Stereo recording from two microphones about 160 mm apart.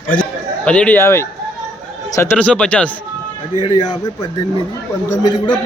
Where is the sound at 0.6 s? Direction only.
5° left (ahead or behind).